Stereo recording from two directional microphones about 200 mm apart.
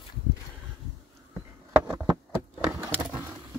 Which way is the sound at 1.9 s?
15° right (ahead or behind).